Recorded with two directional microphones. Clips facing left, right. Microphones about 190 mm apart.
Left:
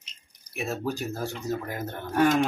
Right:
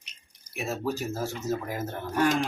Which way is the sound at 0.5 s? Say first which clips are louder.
Even; centre (ahead or behind).